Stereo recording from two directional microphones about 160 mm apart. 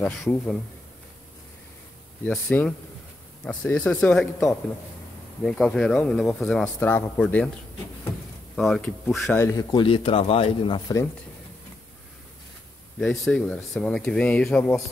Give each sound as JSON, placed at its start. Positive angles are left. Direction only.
{"t": 0.0, "sound": "speech", "side_deg": 5}
{"t": 2.2, "sound": "speech", "side_deg": 5}
{"t": 8.5, "sound": "speech", "side_deg": 5}
{"t": 9.4, "sound": "speech", "side_deg": 20}
{"t": 13.0, "sound": "speech", "side_deg": 0}